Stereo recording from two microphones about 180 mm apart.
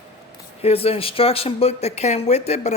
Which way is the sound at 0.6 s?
35° left (ahead or behind).